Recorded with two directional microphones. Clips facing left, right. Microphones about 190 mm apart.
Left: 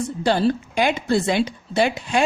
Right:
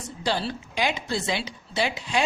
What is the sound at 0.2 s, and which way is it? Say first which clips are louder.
A woman's voice: left 8 dB; 50° left (ahead or behind).